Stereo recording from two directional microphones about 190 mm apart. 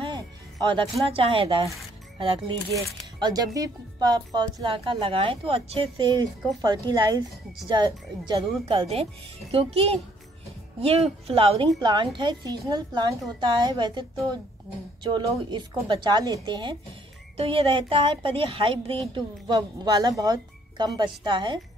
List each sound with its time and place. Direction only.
1.0 s a woman's voice: 30° right (ahead or behind)